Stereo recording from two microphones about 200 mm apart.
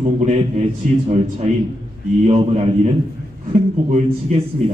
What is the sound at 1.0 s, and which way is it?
A man's voice, 35° right (ahead or behind).